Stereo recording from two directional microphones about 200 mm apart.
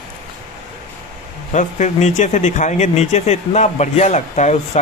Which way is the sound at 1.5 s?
35° left (ahead or behind).